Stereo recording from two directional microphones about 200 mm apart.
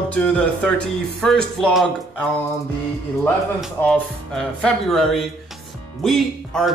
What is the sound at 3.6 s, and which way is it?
Speech, 5° left (ahead or behind).